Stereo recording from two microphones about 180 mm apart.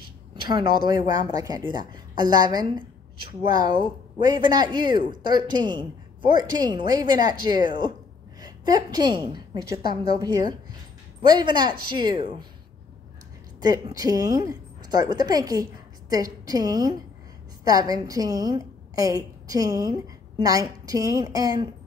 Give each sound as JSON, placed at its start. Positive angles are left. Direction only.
{"t": 0.5, "sound": "a woman's voice", "side_deg": -25}
{"t": 3.8, "sound": "a woman's voice", "side_deg": -25}
{"t": 13.6, "sound": "a woman's voice", "side_deg": -20}